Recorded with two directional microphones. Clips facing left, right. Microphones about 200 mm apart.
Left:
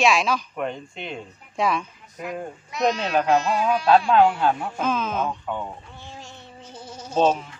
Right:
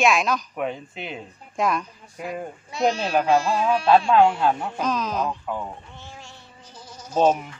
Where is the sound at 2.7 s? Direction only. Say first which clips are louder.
Even; 30° right (ahead or behind).